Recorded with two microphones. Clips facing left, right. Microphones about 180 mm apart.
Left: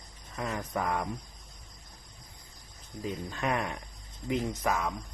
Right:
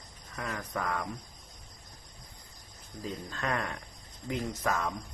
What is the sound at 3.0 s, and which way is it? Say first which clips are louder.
Speech: left 3 dB; 15° left (ahead or behind).